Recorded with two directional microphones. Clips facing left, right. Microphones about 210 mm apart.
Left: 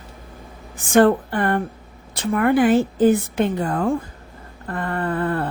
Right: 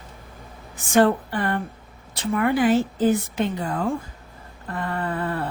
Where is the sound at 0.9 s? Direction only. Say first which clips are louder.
Left 3 dB; 55° left (ahead or behind).